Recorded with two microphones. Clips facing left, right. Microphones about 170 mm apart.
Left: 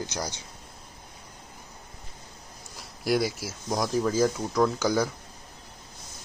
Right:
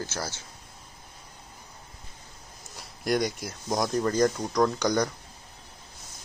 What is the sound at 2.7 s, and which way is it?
Speech, 5° left (ahead or behind).